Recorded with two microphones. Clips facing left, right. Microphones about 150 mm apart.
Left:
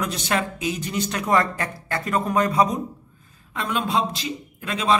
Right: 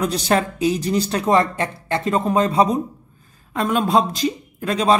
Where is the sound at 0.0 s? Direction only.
35° right (ahead or behind).